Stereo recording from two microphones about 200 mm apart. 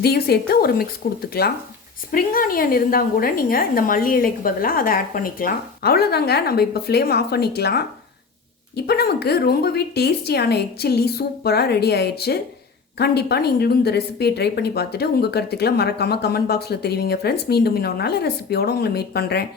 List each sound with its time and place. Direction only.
0.0 s a woman's voice: 50° left (ahead or behind)